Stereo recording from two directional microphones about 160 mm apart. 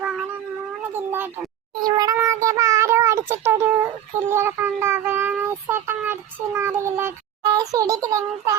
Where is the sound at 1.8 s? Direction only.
25° right (ahead or behind).